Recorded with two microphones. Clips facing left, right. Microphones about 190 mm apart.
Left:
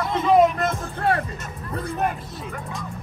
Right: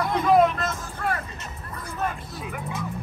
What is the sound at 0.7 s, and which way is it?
Music, 65° left (ahead or behind).